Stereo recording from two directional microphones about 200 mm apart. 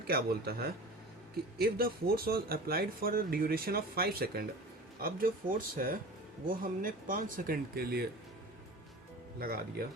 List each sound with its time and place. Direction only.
0.1 s speech: 50° right (ahead or behind)
9.4 s speech: 50° right (ahead or behind)